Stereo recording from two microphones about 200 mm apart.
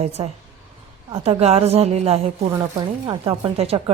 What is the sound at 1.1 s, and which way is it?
A woman's voice, 30° right (ahead or behind).